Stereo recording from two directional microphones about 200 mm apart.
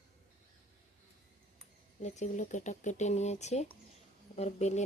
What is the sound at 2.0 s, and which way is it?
Speech, 35° left (ahead or behind).